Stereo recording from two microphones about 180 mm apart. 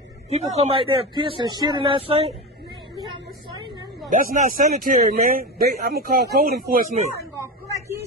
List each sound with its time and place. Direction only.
0.3 s speech: 35° right (ahead or behind)
3.1 s vehicle: 25° right (ahead or behind)
4.1 s speech: 45° right (ahead or behind)
7.3 s a sound: 15° right (ahead or behind)